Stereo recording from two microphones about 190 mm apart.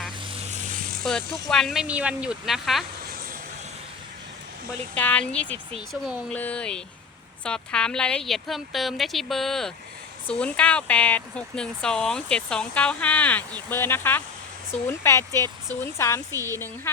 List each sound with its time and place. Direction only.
0.3 s buzz: 35° right (ahead or behind)
1.0 s speech: 5° left (ahead or behind)
4.9 s speech: 5° left (ahead or behind)
16.3 s speech: 15° right (ahead or behind)
16.9 s speech: 15° left (ahead or behind)